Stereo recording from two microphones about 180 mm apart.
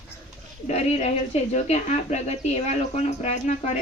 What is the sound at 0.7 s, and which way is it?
Speech, 35° left (ahead or behind).